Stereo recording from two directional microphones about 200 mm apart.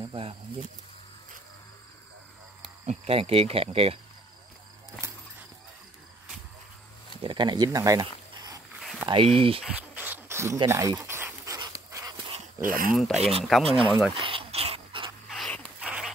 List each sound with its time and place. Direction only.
0.0 s speech: 30° right (ahead or behind)
2.9 s speech: 30° right (ahead or behind)
7.2 s speech: 20° right (ahead or behind)
9.6 s rub: 5° right (ahead or behind)
10.6 s speech: 15° right (ahead or behind)
11.0 s dog: 10° right (ahead or behind)
12.6 s speech: 45° right (ahead or behind)
12.9 s speech: centre (ahead or behind)
13.7 s speech: 25° right (ahead or behind)
14.1 s dog: 25° right (ahead or behind)
15.2 s a sound: centre (ahead or behind)